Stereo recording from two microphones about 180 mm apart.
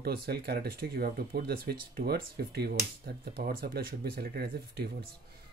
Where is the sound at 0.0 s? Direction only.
60° right (ahead or behind).